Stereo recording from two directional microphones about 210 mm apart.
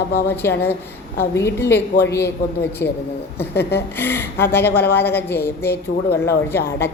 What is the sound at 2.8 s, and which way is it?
Speech, 50° left (ahead or behind).